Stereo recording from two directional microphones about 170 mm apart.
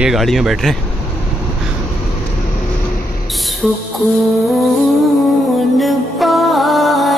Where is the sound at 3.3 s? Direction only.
Centre (ahead or behind).